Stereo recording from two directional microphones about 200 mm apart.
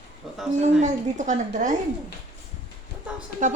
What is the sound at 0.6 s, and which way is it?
Speech, 35° right (ahead or behind).